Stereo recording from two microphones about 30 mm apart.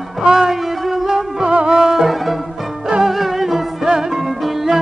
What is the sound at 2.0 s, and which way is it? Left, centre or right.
Music, centre.